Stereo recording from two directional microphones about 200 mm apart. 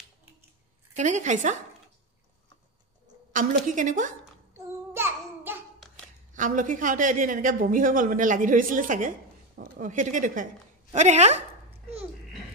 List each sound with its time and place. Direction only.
0.9 s a woman's voice: 35° right (ahead or behind)
3.3 s a woman's voice: 40° right (ahead or behind)
4.6 s child singing: 10° right (ahead or behind)
6.3 s a woman's voice: 40° right (ahead or behind)